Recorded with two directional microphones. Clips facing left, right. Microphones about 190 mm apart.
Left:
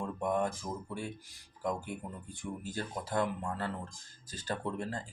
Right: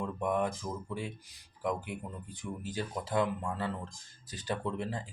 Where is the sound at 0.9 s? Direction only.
20° right (ahead or behind).